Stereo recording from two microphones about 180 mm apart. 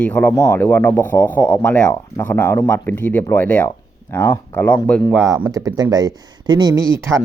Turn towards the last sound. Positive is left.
turn(degrees=-15)  # may be behind; listen again after turning